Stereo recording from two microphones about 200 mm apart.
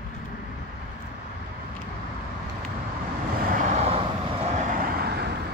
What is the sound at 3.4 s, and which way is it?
Vehicle, 40° right (ahead or behind).